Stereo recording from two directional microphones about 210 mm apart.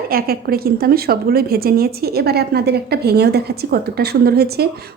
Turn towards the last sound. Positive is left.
turn(degrees=-50)  # may be behind; listen again after turning